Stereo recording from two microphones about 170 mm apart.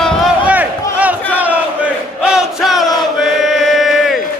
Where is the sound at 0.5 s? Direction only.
10° right (ahead or behind).